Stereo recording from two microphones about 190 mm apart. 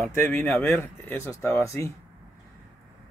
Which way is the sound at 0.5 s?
Centre (ahead or behind).